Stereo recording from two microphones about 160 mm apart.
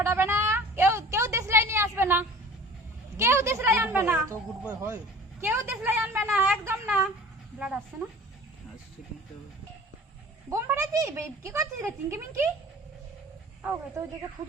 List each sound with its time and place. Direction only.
0.0 s a sound: 15° right (ahead or behind)
4.7 s a woman's voice: 15° right (ahead or behind)
10.5 s a woman's voice: 20° right (ahead or behind)